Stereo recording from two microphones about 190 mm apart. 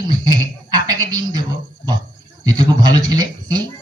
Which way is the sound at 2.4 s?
20° right (ahead or behind).